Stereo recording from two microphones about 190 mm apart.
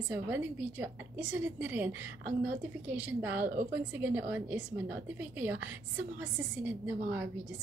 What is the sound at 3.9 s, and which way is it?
A woman's voice, 10° right (ahead or behind).